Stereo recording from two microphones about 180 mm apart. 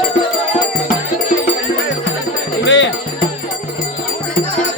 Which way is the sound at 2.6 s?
85° left.